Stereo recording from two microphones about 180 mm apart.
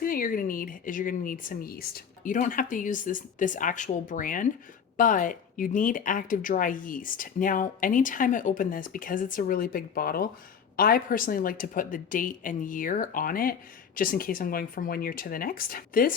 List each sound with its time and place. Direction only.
0.0 s a woman's voice: 50° left (ahead or behind)